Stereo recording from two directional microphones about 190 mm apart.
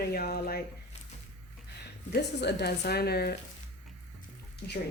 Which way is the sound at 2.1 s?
55° left (ahead or behind).